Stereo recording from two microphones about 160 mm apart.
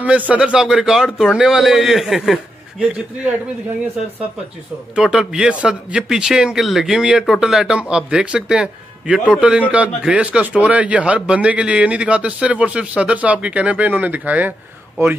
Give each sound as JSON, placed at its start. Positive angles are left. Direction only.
{"t": 0.0, "sound": "a man's voice", "side_deg": -10}
{"t": 4.9, "sound": "a man's voice", "side_deg": -5}